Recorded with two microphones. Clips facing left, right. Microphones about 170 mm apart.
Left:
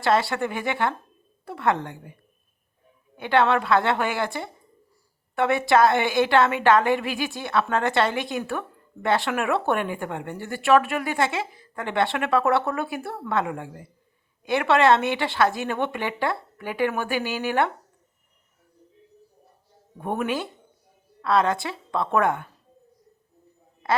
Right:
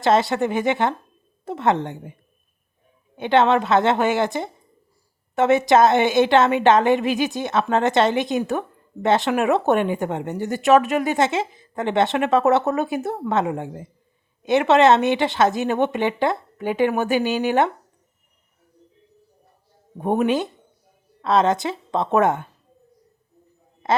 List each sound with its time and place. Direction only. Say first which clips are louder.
0.0 s a woman's voice: right 4 dB; 20° right (ahead or behind)
3.2 s a woman's voice: right 4 dB; 20° right (ahead or behind)
20.0 s a woman's voice: right 7 dB; 20° right (ahead or behind)
23.8 s a sound: right 3 dB; 25° right (ahead or behind)